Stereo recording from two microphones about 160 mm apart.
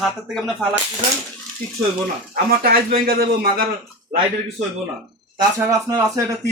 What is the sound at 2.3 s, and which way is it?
Speech, 70° right (ahead or behind).